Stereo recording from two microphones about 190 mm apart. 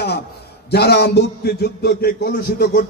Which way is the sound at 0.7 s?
60° left (ahead or behind).